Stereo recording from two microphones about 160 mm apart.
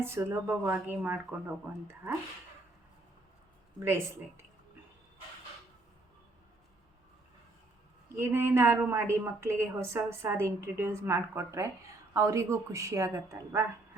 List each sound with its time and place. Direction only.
0.0 s a woman's voice: 15° right (ahead or behind)
3.8 s a woman's voice: 15° right (ahead or behind)
8.2 s a woman's voice: 15° right (ahead or behind)